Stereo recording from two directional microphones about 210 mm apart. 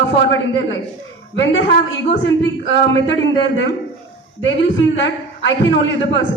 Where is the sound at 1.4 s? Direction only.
60° left (ahead or behind).